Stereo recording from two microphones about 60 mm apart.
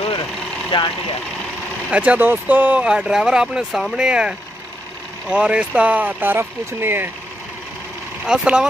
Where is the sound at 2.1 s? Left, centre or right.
Right.